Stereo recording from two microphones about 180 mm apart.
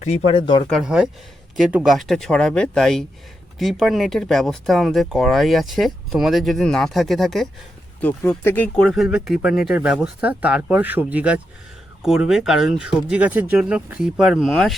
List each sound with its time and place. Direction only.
0.0 s speech: 40° left (ahead or behind)
0.7 s speech: centre (ahead or behind)
8.0 s speech: 10° left (ahead or behind)